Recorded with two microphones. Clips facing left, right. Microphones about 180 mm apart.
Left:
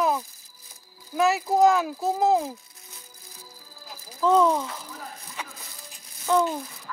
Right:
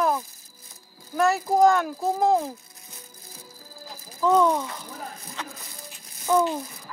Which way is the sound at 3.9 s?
Centre (ahead or behind).